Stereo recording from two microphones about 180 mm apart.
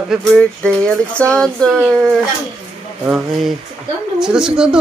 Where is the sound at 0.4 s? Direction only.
5° left (ahead or behind).